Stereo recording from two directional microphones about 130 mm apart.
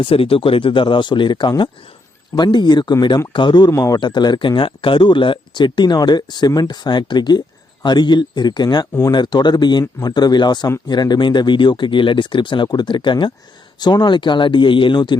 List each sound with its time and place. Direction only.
0.0 s speech: 45° left (ahead or behind)
3.7 s speech: 25° left (ahead or behind)